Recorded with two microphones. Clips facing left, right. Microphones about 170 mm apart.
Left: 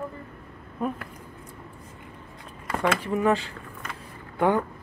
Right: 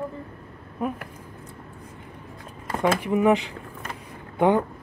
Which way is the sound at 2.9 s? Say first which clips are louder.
Right 5 dB; 15° right (ahead or behind).